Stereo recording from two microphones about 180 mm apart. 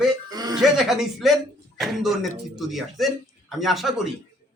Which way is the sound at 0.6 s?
Centre (ahead or behind).